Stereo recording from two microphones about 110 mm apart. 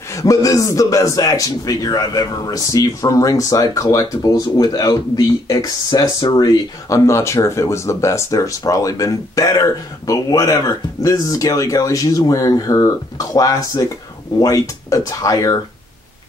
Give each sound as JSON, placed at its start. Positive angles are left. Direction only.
{"t": 0.1, "sound": "a man's voice", "side_deg": 30}
{"t": 7.1, "sound": "a man's voice", "side_deg": 25}